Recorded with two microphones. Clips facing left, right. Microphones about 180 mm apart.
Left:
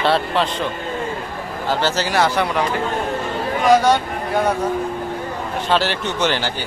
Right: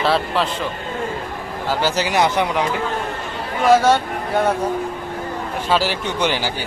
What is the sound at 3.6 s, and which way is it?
Speech, 5° right (ahead or behind).